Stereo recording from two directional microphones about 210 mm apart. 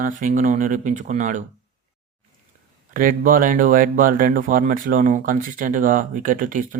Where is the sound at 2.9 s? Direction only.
40° right (ahead or behind).